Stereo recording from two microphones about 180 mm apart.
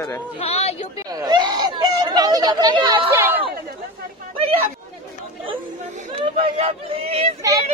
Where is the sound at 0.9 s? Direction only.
20° right (ahead or behind).